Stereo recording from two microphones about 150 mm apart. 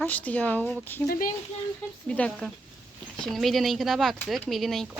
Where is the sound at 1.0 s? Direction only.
75° left (ahead or behind).